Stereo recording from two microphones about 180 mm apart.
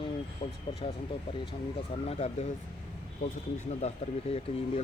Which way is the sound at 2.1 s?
35° left (ahead or behind).